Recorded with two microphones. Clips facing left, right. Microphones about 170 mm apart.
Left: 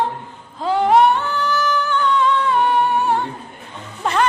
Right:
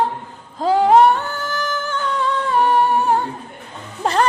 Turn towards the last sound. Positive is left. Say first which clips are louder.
# right 1 dB
turn(degrees=-35)  # may be behind; listen again after turning